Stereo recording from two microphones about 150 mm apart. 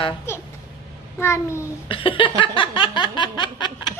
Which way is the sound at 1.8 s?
35° left (ahead or behind).